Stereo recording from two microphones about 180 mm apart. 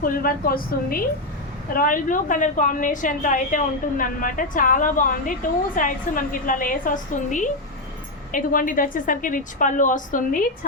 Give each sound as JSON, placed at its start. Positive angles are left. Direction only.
{"t": 0.0, "sound": "a woman's voice", "side_deg": 50}